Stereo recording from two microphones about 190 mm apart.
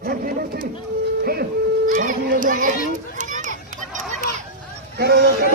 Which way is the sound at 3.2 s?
40° right (ahead or behind).